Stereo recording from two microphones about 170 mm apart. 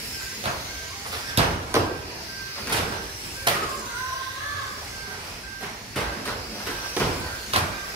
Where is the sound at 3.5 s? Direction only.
30° right (ahead or behind).